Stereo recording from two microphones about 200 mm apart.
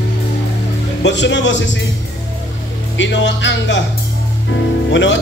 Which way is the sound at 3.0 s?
65° left (ahead or behind).